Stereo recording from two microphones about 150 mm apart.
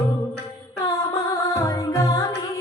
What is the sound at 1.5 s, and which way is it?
Music, 25° left (ahead or behind).